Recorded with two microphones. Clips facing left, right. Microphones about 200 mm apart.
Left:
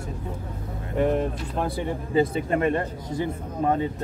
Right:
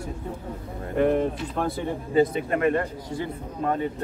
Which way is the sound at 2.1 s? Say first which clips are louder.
Right 1 dB; 30° left (ahead or behind).